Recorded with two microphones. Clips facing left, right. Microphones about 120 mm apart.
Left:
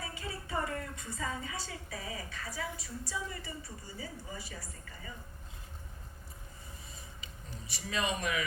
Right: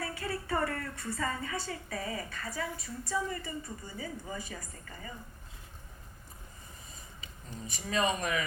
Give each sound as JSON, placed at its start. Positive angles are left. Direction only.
{"t": 0.0, "sound": "a woman's voice", "side_deg": -60}
{"t": 7.7, "sound": "speech", "side_deg": -40}